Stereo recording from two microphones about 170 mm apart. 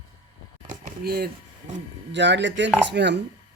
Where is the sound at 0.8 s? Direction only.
70° right (ahead or behind).